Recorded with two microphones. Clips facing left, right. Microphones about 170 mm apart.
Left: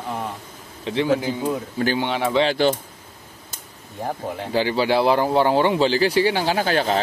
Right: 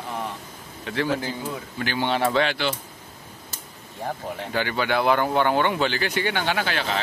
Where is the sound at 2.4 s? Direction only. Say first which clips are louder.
Left 6 dB; 40° left (ahead or behind).